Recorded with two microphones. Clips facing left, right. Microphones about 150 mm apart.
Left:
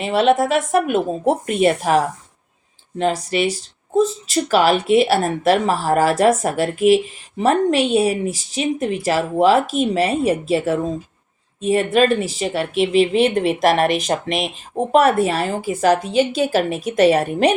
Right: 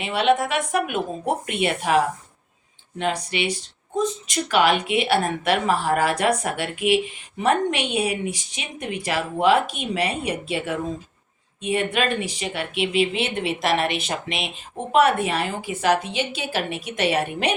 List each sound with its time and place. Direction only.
0.0 s a woman's voice: 40° left (ahead or behind)
3.0 s a woman's voice: 40° left (ahead or behind)